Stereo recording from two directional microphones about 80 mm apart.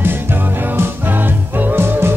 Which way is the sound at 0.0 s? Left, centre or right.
Right.